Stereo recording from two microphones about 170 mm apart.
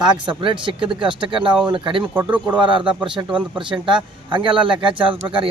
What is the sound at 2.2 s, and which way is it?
Speech, 10° right (ahead or behind).